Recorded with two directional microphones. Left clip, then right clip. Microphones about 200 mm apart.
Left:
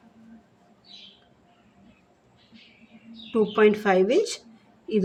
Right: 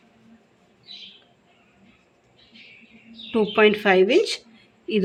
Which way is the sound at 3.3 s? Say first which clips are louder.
Right 2 dB; 25° right (ahead or behind).